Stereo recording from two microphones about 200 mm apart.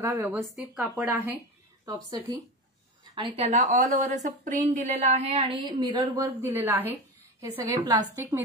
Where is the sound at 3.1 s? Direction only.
30° right (ahead or behind); by 6.9 s 10° right (ahead or behind).